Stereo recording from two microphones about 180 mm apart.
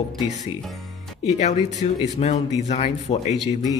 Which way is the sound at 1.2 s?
40° left (ahead or behind).